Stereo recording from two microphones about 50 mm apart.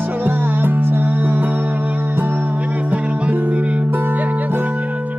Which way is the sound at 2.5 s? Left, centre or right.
Right.